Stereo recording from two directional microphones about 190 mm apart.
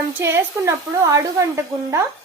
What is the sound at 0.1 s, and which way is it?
Speech, 15° right (ahead or behind).